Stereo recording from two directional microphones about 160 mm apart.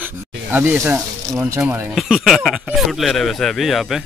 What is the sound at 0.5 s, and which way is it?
Speech, 10° right (ahead or behind).